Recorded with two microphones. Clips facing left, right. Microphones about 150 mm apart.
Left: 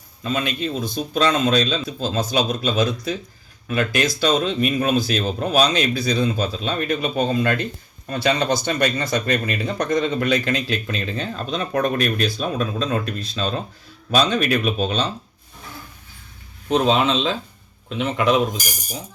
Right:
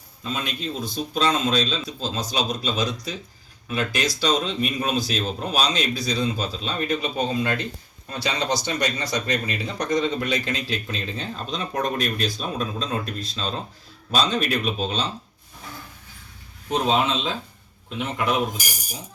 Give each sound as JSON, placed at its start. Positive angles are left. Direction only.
{"t": 0.2, "sound": "speech", "side_deg": 65}
{"t": 16.6, "sound": "speech", "side_deg": 85}